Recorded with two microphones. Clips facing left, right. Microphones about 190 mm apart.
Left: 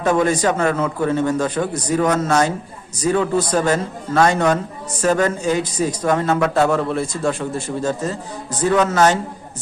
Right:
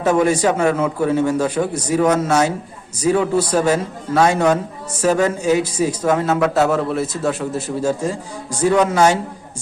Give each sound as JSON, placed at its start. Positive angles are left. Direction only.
{"t": 0.0, "sound": "a man's voice", "side_deg": -10}